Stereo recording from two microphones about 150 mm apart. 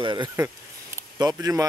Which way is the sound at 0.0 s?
30° right (ahead or behind).